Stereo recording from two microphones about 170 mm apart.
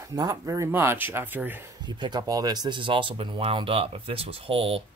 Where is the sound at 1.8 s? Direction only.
25° right (ahead or behind).